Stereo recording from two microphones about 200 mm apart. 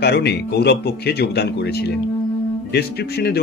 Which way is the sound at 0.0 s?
55° left (ahead or behind).